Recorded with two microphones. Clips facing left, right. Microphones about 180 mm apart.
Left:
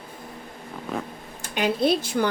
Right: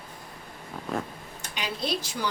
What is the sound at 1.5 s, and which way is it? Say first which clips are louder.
Speech: left 10 dB; 55° left (ahead or behind).